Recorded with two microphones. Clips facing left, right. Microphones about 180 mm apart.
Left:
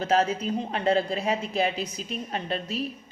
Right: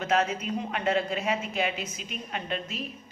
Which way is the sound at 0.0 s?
35° left (ahead or behind).